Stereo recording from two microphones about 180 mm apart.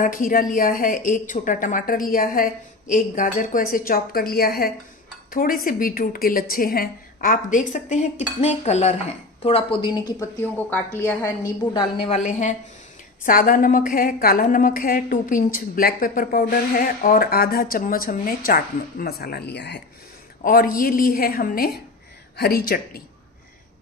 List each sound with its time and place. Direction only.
0.0 s a woman's voice: 50° left (ahead or behind); by 11.3 s 15° left (ahead or behind)
11.7 s a woman's voice: 25° left (ahead or behind); by 19.8 s 70° left (ahead or behind)
20.4 s a woman's voice: 55° left (ahead or behind)